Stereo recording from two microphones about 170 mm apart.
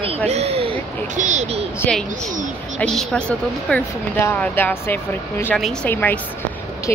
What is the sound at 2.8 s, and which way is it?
Speech, 5° left (ahead or behind).